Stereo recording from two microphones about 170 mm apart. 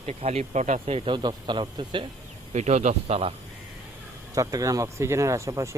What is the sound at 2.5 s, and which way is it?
Speech, 45° right (ahead or behind).